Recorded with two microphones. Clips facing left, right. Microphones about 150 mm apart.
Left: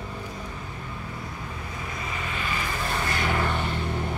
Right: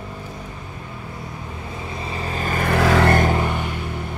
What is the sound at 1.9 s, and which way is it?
Vehicle, 30° right (ahead or behind).